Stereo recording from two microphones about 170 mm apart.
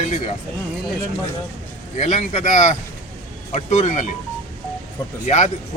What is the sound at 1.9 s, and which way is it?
A man's voice, 45° left (ahead or behind).